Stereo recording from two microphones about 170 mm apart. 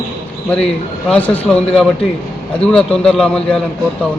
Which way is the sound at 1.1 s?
5° left (ahead or behind).